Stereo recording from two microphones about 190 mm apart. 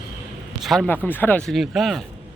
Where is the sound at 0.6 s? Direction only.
Centre (ahead or behind).